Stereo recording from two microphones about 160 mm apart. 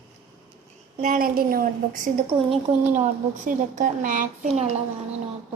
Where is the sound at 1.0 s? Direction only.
60° right (ahead or behind).